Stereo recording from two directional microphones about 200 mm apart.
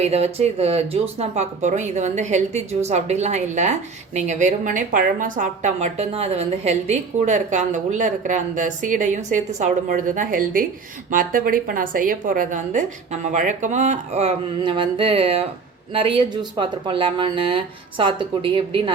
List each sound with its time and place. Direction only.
0.0 s a woman's voice: 30° right (ahead or behind)